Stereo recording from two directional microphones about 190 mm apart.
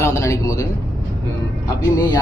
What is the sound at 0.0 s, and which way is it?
Speech, 15° left (ahead or behind).